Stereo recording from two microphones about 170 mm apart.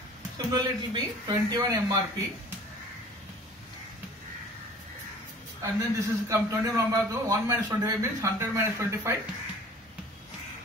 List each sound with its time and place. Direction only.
0.5 s speech: 25° right (ahead or behind)
5.6 s a man's voice: 15° right (ahead or behind)